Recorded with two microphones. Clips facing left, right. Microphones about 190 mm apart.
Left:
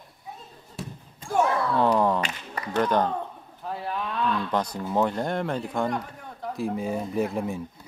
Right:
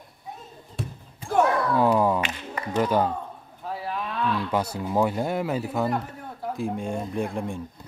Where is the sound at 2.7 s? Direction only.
5° right (ahead or behind).